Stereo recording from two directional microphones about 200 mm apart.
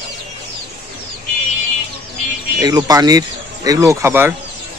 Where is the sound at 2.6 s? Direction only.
20° right (ahead or behind).